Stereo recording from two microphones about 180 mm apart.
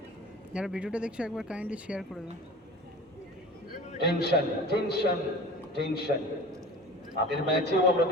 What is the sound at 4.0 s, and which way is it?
A man's voice, 65° left (ahead or behind).